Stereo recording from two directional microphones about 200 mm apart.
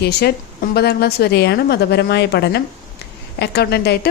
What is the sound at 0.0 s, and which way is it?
A woman's voice, 55° left (ahead or behind).